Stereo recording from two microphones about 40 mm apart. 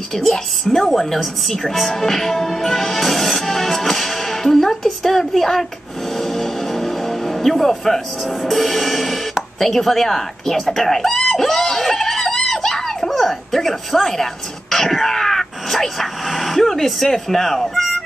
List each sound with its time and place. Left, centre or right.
0.1 s a woman's voice: centre
6.1 s music: centre
9.6 s speech: centre